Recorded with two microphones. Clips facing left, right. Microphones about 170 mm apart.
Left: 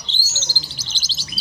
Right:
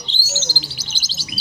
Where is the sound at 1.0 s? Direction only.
30° left (ahead or behind).